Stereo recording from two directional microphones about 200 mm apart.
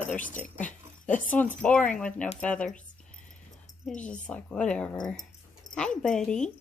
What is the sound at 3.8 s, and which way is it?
A woman's voice, 5° left (ahead or behind).